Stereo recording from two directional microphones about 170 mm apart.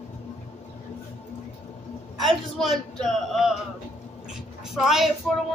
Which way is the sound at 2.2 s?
Centre (ahead or behind).